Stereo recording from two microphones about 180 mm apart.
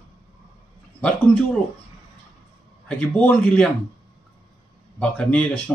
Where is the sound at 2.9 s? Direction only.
5° left (ahead or behind).